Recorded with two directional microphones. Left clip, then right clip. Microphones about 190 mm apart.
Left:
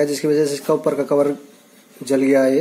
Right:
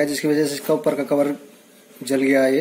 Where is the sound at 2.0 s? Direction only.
65° left (ahead or behind).